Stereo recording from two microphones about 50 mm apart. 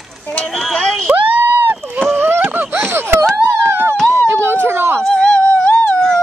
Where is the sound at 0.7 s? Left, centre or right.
Centre.